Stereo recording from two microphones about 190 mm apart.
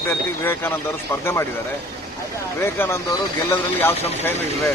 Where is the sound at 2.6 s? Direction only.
15° left (ahead or behind).